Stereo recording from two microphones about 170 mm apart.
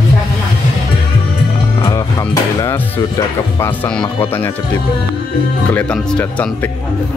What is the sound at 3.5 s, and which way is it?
Speech, 10° left (ahead or behind).